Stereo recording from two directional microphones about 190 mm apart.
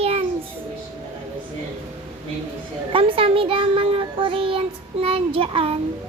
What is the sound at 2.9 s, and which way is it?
A child's voice, 30° right (ahead or behind).